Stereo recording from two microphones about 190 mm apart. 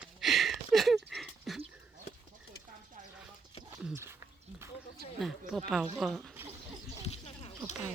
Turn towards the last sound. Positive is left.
turn(degrees=35)  # may be behind; listen again after turning